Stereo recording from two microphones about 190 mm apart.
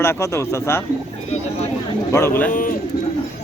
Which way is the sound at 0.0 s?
15° left (ahead or behind).